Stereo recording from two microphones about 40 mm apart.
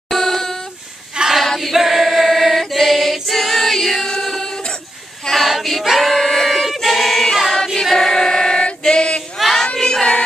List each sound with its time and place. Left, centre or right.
0.1 s a sound: centre
1.3 s choir: centre
4.2 s music: centre
4.5 s a sound: centre
5.3 s choir: centre
8.8 s female singing: left
9.8 s choir: centre